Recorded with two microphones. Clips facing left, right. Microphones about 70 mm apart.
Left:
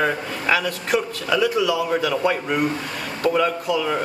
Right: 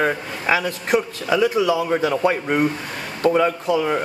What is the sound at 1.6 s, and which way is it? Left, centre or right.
Speech, right.